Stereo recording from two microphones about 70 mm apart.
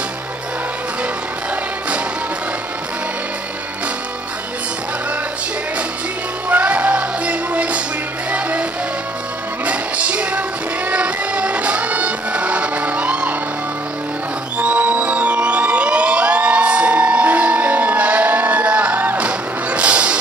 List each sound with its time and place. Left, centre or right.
6.5 s music: right
9.7 s music: centre
14.6 s music: right